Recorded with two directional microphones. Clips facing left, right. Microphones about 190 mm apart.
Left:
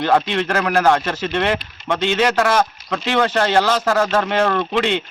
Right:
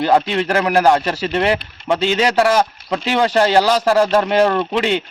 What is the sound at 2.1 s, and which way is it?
Speech, 10° right (ahead or behind).